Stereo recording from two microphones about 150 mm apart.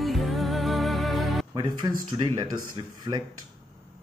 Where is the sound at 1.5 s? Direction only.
30° right (ahead or behind).